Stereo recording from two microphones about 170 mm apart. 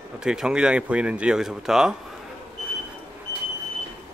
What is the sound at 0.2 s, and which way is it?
Speech, 5° right (ahead or behind).